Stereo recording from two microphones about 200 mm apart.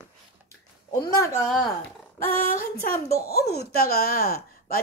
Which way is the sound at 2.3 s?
45° left (ahead or behind).